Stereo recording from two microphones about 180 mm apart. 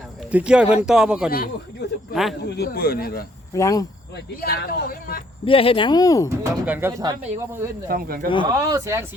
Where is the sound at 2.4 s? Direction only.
65° left (ahead or behind).